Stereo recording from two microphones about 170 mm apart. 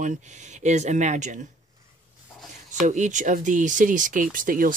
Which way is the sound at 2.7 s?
45° right (ahead or behind).